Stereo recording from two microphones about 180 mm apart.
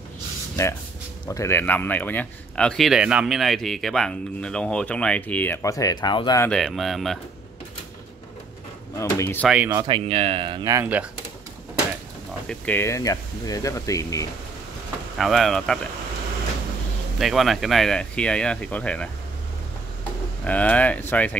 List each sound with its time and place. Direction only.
1.3 s speech: 15° left (ahead or behind)
6.4 s speech: centre (ahead or behind)
8.9 s speech: 15° left (ahead or behind)
9.5 s speech: 5° right (ahead or behind)
9.8 s speech: 25° right (ahead or behind); by 11.1 s 10° right (ahead or behind)
12.4 s speech: 10° left (ahead or behind)
15.1 s speech: centre (ahead or behind)
17.2 s speech: centre (ahead or behind)
20.4 s speech: 10° left (ahead or behind)